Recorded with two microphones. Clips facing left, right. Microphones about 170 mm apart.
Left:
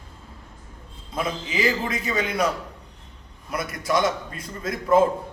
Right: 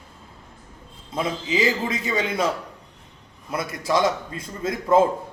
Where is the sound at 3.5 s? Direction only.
25° right (ahead or behind).